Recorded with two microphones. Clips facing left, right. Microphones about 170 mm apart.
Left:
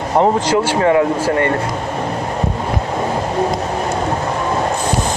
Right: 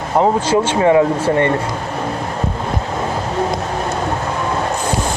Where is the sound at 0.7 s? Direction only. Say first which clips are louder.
Right 2 dB; 20° right (ahead or behind).